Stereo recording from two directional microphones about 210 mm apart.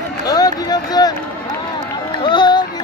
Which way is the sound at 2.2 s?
20° left (ahead or behind).